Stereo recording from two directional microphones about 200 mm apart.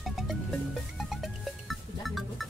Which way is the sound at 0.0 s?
Centre (ahead or behind).